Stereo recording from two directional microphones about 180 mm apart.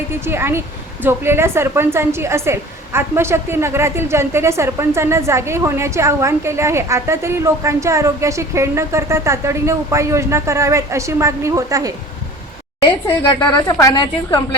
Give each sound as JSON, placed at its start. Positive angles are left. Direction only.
{"t": 0.1, "sound": "a woman's voice", "side_deg": -15}
{"t": 13.8, "sound": "a woman's voice", "side_deg": 20}